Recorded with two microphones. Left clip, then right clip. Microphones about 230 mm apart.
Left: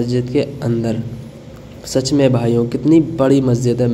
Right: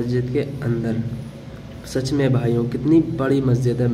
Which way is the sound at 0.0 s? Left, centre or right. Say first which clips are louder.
Left 5 dB; centre.